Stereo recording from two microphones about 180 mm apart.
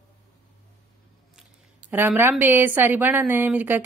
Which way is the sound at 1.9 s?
10° right (ahead or behind).